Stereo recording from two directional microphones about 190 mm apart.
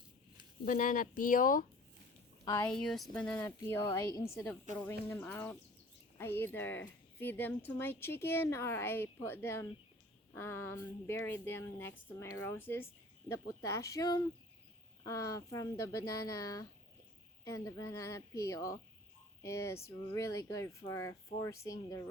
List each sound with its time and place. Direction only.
0.6 s speech: 45° left (ahead or behind)
2.4 s a woman's voice: 15° left (ahead or behind)
2.6 s speech: 5° left (ahead or behind)